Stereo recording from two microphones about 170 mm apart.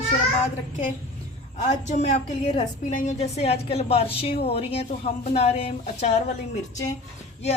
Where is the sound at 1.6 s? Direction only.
45° left (ahead or behind).